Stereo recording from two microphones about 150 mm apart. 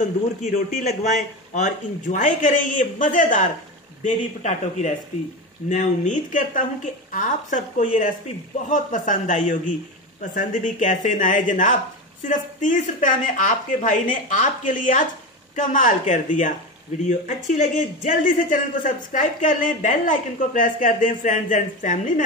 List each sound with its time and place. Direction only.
0.0 s speech: 60° left (ahead or behind)